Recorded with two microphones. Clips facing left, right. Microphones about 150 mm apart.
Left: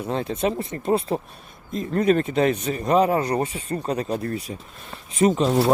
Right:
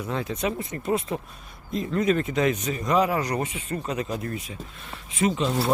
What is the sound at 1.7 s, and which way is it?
Speech, 45° left (ahead or behind).